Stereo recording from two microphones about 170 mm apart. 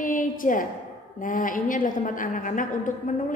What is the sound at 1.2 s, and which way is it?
A woman's voice, 50° left (ahead or behind).